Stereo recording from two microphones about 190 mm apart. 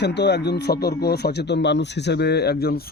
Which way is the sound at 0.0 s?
65° left (ahead or behind).